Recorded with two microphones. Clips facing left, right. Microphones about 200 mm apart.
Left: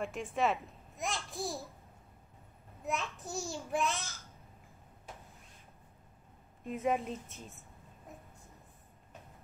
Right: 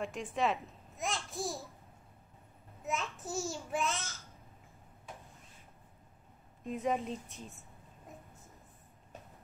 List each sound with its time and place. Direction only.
0.0 s a child's voice: centre (ahead or behind)
2.8 s a child's voice: centre (ahead or behind)
6.6 s a child's voice: centre (ahead or behind)